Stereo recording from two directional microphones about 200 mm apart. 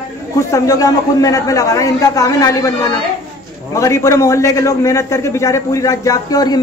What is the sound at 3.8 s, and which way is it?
A man's voice, 15° left (ahead or behind).